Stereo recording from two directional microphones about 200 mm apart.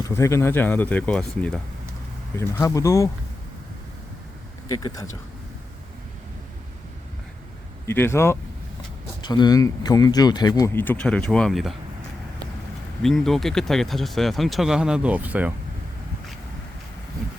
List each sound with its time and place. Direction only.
0.0 s speech: 15° left (ahead or behind)
2.4 s speech: 15° left (ahead or behind)
4.7 s speech: 20° left (ahead or behind)
7.9 s speech: 10° left (ahead or behind)
13.0 s speech: centre (ahead or behind)